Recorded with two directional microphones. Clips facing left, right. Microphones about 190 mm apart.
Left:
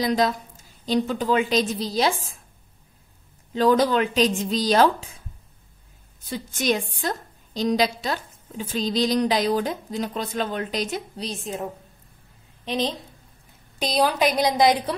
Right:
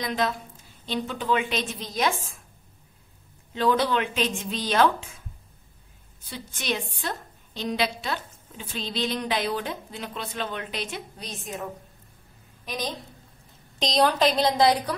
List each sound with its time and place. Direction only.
0.0 s a woman's voice: 35° left (ahead or behind)
3.5 s a woman's voice: 40° left (ahead or behind)
6.2 s a woman's voice: 45° left (ahead or behind)
12.6 s a woman's voice: 25° left (ahead or behind)
13.7 s a woman's voice: 5° left (ahead or behind)